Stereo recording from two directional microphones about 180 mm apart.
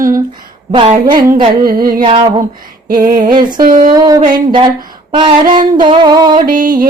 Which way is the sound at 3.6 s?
50° right (ahead or behind).